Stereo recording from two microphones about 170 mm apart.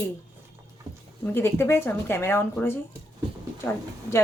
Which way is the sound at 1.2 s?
15° left (ahead or behind).